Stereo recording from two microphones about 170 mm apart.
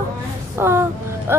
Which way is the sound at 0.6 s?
15° right (ahead or behind).